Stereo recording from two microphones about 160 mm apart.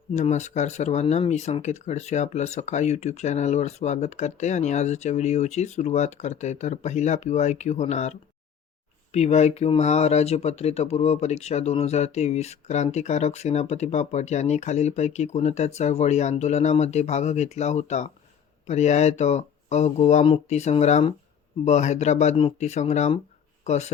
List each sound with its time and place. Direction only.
0.2 s speech: 45° left (ahead or behind)